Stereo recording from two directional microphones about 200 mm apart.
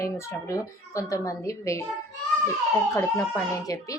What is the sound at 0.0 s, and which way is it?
Speech, 15° left (ahead or behind).